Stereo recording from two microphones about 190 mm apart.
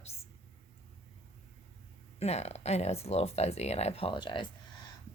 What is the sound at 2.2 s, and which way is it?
Speech, 35° left (ahead or behind).